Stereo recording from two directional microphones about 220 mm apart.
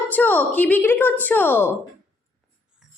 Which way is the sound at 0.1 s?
10° left (ahead or behind).